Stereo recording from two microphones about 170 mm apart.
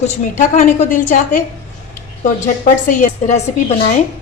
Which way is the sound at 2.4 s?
45° left (ahead or behind).